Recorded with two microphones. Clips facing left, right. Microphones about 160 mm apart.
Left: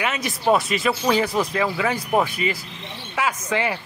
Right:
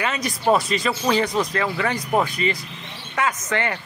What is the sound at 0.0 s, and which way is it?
Speech, 5° left (ahead or behind).